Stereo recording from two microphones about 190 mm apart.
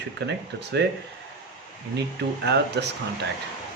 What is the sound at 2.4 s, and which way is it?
Speech, 65° right (ahead or behind).